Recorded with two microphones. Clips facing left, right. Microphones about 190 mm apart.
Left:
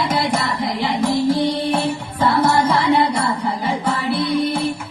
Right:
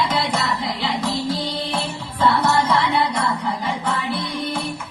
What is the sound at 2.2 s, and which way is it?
Music, 30° left (ahead or behind).